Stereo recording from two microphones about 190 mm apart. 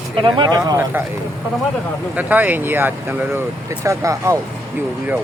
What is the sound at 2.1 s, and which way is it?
Speech, 10° right (ahead or behind).